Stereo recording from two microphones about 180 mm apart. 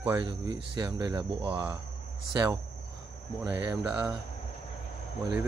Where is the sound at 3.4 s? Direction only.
15° right (ahead or behind).